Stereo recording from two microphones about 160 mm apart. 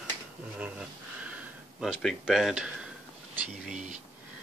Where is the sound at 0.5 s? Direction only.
5° right (ahead or behind).